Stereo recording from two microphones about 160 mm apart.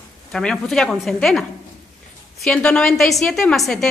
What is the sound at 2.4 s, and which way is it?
A woman's voice, 5° left (ahead or behind).